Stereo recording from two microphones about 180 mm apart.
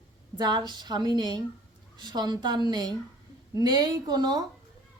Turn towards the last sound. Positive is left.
turn(degrees=-25)  # may be behind; listen again after turning